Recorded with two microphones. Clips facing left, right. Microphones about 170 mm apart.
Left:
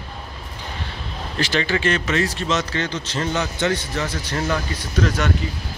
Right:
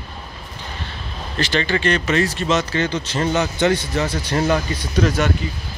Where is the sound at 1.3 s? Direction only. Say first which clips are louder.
Right 1 dB; 5° left (ahead or behind); by 4.0 s 15° right (ahead or behind).